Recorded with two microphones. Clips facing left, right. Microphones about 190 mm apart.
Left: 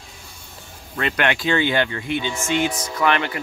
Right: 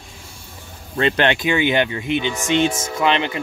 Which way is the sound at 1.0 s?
25° right (ahead or behind).